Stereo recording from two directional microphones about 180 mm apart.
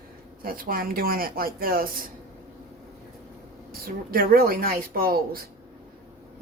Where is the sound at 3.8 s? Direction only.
55° right (ahead or behind).